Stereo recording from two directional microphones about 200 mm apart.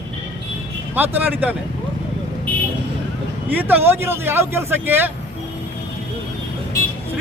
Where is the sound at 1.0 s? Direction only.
10° right (ahead or behind).